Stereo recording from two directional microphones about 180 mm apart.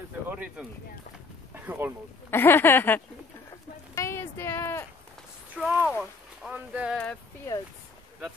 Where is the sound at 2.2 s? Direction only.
10° left (ahead or behind).